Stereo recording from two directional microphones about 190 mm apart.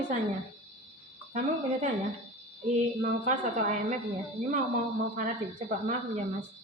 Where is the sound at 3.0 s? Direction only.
45° right (ahead or behind).